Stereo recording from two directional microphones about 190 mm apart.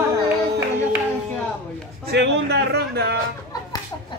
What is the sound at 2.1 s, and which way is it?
Speech, 60° right (ahead or behind).